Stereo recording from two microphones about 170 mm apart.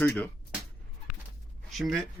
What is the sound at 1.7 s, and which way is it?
Speech, centre (ahead or behind).